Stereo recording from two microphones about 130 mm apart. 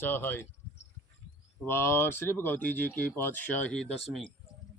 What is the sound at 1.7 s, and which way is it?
Speech, 20° left (ahead or behind).